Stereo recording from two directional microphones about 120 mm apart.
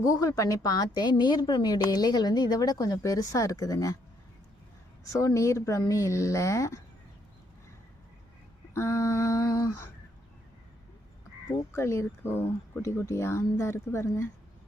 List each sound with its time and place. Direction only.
0.2 s a woman's voice: 30° left (ahead or behind)
5.1 s speech: 25° left (ahead or behind)
8.7 s speech: 25° left (ahead or behind)
11.7 s speech: 20° left (ahead or behind)